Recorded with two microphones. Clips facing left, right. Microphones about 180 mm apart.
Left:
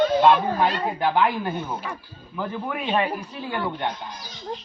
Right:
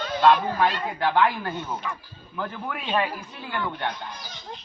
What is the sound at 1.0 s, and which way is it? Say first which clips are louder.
Speech: even; 15° left (ahead or behind).